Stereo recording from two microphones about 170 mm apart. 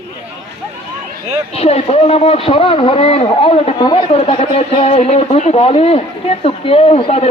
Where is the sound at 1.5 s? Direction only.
40° left (ahead or behind).